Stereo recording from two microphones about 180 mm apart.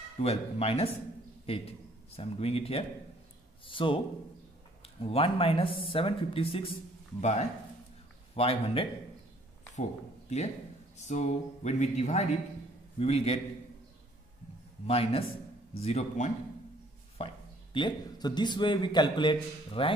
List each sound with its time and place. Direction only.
0.2 s a man's voice: 35° left (ahead or behind)
10.3 s speech: 40° left (ahead or behind)
14.9 s speech: 35° left (ahead or behind)
17.2 s chopping: 35° left (ahead or behind)
17.7 s a man's voice: 25° left (ahead or behind)